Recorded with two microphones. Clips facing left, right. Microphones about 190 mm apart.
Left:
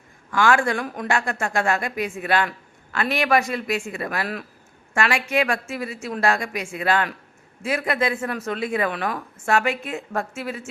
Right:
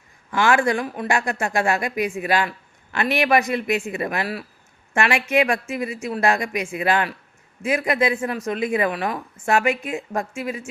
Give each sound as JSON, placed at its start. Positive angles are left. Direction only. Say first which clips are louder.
{"t": 0.3, "sound": "a man's voice", "louder": "right 1 dB", "side_deg": -20}
{"t": 0.8, "sound": "a woman's voice", "louder": "right 2 dB", "side_deg": -5}
{"t": 1.0, "sound": "a woman's voice", "louder": "even", "side_deg": -15}